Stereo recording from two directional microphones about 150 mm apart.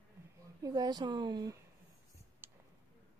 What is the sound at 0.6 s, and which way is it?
Speech, 25° right (ahead or behind).